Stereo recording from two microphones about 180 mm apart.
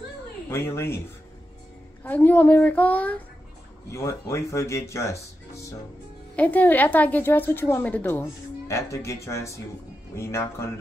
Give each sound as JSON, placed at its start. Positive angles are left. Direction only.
{"t": 0.5, "sound": "a woman's voice", "side_deg": 15}
{"t": 2.0, "sound": "a woman's voice", "side_deg": 10}
{"t": 6.3, "sound": "a woman's voice", "side_deg": 10}